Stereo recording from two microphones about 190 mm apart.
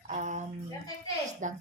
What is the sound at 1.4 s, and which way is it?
Speech, 40° right (ahead or behind).